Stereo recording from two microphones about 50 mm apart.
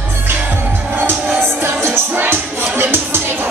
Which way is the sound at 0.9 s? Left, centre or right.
Right.